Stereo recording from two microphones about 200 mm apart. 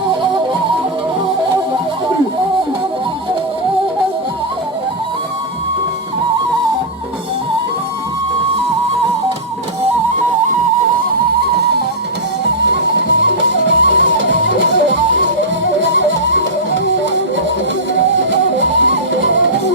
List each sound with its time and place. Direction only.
12.6 s music: 60° right (ahead or behind)
18.2 s music: 65° right (ahead or behind)